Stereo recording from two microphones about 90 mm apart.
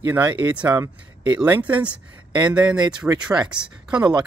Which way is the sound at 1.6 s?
15° right (ahead or behind).